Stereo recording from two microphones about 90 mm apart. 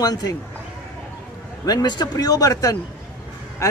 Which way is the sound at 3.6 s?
35° left (ahead or behind).